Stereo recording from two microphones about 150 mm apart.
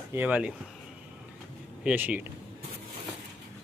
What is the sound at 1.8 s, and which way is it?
Speech, 10° right (ahead or behind).